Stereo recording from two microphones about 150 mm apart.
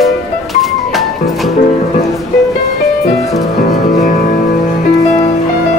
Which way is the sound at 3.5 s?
60° left (ahead or behind).